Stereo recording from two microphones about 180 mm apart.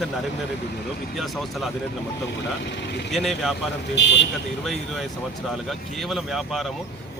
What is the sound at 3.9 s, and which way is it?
Speech, 80° left.